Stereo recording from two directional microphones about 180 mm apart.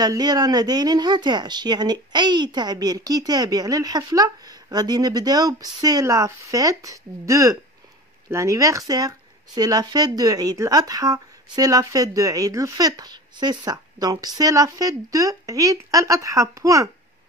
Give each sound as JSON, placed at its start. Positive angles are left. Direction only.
{"t": 0.0, "sound": "speech", "side_deg": -20}